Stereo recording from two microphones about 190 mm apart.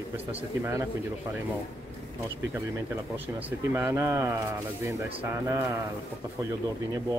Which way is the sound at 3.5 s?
15° right (ahead or behind).